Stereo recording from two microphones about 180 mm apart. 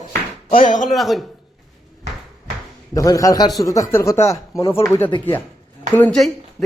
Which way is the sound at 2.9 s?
20° left (ahead or behind).